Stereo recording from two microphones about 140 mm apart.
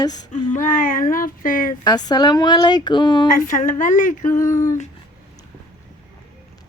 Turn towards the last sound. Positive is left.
turn(degrees=20)  # may be behind; listen again after turning